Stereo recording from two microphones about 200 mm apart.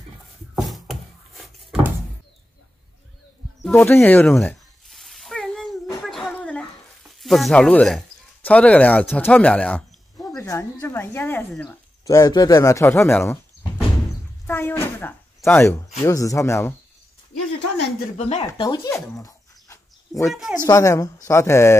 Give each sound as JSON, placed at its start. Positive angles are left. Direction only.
{"t": 0.6, "sound": "a sound", "side_deg": 0}
{"t": 3.6, "sound": "cat", "side_deg": 10}
{"t": 6.0, "sound": "a sound", "side_deg": 0}
{"t": 7.0, "sound": "speech", "side_deg": 0}
{"t": 14.4, "sound": "a sound", "side_deg": 10}
{"t": 16.1, "sound": "speech", "side_deg": 15}
{"t": 18.1, "sound": "speech", "side_deg": 35}
{"t": 18.5, "sound": "speech", "side_deg": 20}
{"t": 19.1, "sound": "dog", "side_deg": 15}
{"t": 20.3, "sound": "speech", "side_deg": -5}
{"t": 20.6, "sound": "speech", "side_deg": 15}